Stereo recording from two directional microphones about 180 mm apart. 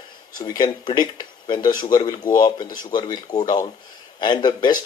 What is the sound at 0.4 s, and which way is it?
Speech, 20° left (ahead or behind).